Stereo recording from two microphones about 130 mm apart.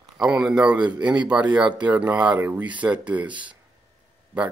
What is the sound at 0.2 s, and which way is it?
Speech, 5° right (ahead or behind).